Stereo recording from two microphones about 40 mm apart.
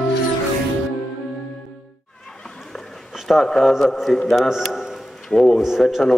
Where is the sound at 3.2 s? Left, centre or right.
Centre.